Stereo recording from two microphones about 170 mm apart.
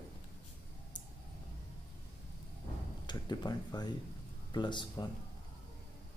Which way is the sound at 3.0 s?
25° left (ahead or behind).